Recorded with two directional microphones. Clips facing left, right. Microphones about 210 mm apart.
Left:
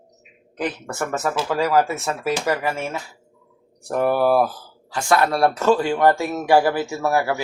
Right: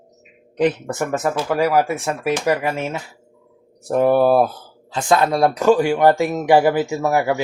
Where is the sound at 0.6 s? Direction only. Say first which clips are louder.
Right 7 dB; 20° right (ahead or behind).